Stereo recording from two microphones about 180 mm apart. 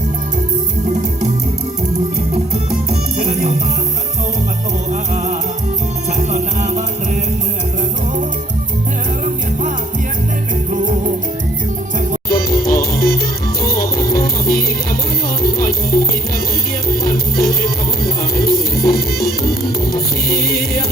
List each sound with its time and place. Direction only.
2.3 s music: 35° right (ahead or behind)
4.9 s music: 40° right (ahead or behind)
10.7 s music: 45° right (ahead or behind)
12.3 s music: 50° left (ahead or behind)